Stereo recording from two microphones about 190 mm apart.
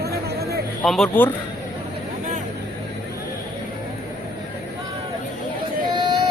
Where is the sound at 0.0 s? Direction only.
55° right (ahead or behind).